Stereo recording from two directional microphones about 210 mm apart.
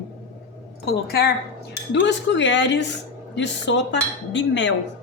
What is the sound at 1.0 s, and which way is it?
Speech, 50° left (ahead or behind).